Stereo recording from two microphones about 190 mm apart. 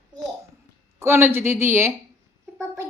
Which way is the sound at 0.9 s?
10° right (ahead or behind).